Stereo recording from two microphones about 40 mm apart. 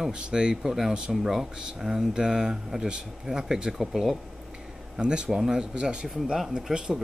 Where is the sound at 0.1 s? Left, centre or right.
Right.